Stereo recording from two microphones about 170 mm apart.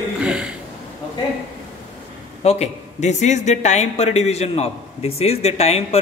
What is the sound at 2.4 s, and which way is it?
A man's voice, 40° left (ahead or behind).